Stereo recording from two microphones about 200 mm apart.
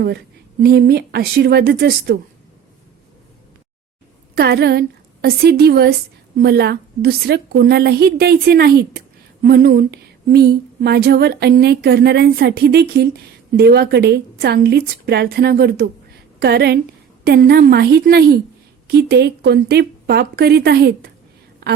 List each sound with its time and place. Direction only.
0.6 s a woman's voice: 50° right (ahead or behind)
4.4 s a woman's voice: 50° right (ahead or behind)